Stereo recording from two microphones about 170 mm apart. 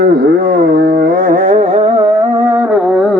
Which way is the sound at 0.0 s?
60° right (ahead or behind).